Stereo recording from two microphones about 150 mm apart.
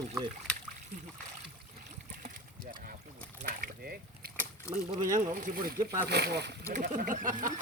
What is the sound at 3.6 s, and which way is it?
Boat, 90° right.